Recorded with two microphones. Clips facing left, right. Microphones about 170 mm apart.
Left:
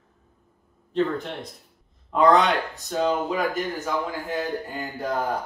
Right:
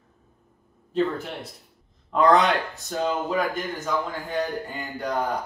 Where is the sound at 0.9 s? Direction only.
5° right (ahead or behind).